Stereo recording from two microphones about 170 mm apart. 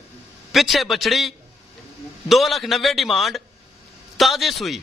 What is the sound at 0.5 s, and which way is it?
A man's voice, centre (ahead or behind).